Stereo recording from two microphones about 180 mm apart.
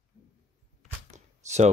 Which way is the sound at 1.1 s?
40° right (ahead or behind).